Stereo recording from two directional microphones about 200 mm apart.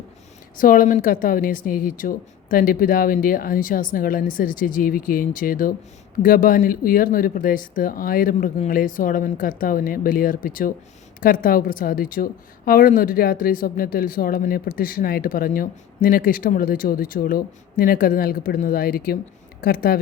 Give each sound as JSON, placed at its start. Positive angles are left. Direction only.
{"t": 0.6, "sound": "a woman's voice", "side_deg": 45}